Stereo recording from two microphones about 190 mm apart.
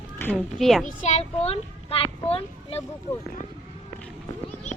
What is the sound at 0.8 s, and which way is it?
A child's voice, 35° left (ahead or behind).